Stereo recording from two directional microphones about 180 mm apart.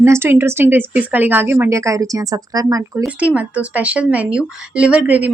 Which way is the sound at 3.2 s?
5° right (ahead or behind).